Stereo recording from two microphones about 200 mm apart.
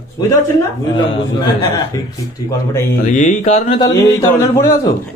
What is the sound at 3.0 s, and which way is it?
Speech, 40° left (ahead or behind).